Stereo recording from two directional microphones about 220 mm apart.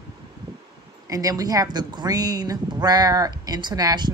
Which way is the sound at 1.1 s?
15° right (ahead or behind).